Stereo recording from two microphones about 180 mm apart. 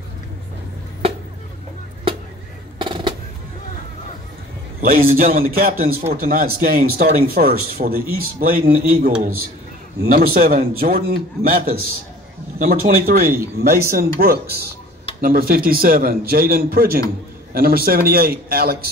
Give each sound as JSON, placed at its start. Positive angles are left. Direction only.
{"t": 2.8, "sound": "music", "side_deg": -25}
{"t": 4.8, "sound": "speech", "side_deg": -55}